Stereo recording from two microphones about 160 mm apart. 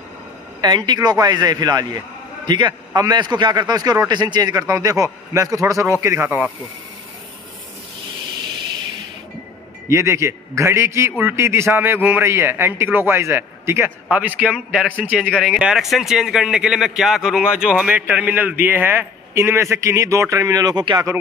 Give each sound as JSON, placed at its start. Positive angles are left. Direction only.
{"t": 0.6, "sound": "a man's voice", "side_deg": -25}
{"t": 9.8, "sound": "speech", "side_deg": -20}